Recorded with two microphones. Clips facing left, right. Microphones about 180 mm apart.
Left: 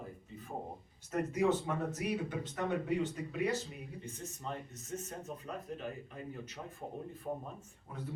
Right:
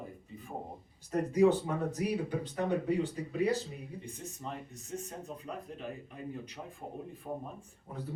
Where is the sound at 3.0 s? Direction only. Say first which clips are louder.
Right 3 dB; 35° right (ahead or behind).